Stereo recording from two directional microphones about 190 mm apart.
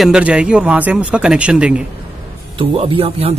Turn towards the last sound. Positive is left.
turn(degrees=-30)  # may be behind; listen again after turning